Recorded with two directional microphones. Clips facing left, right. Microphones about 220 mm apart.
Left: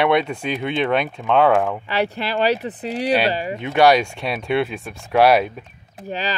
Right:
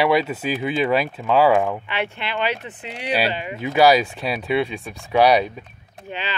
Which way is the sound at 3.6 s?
5° right (ahead or behind).